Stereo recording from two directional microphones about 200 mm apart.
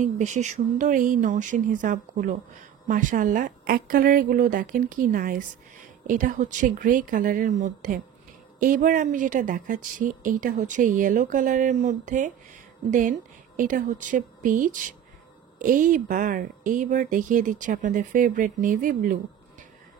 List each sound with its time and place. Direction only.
0.0 s a woman's voice: 35° right (ahead or behind)
13.6 s a woman's voice: 40° right (ahead or behind)